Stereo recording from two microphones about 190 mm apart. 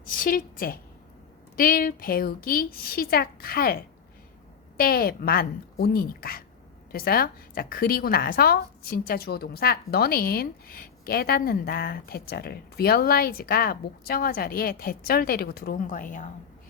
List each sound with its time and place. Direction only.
0.1 s a woman's voice: 45° left (ahead or behind)